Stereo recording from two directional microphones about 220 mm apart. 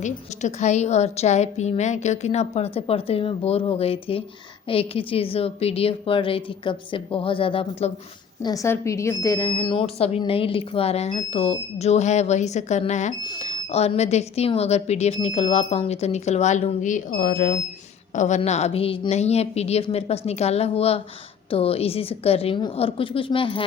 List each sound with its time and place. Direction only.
0.0 s speech: 30° left (ahead or behind)